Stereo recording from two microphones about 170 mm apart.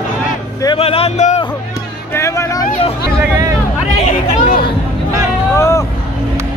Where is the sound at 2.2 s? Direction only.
15° left (ahead or behind).